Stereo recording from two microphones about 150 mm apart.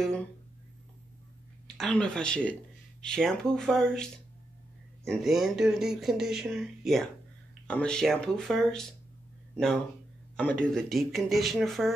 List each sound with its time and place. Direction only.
0.0 s speech: 5° left (ahead or behind)
1.8 s speech: 5° left (ahead or behind)
10.3 s speech: 5° left (ahead or behind)